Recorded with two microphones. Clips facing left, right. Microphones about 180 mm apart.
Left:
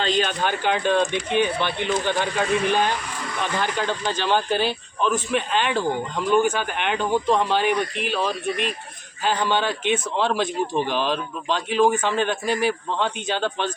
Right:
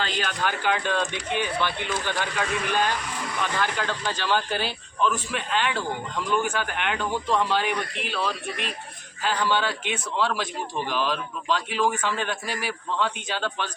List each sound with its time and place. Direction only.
0.0 s speech: 25° left (ahead or behind)